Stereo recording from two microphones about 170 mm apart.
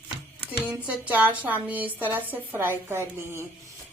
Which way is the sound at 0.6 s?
5° right (ahead or behind).